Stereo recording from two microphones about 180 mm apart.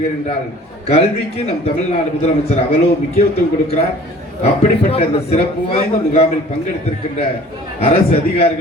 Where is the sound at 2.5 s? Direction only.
35° left (ahead or behind).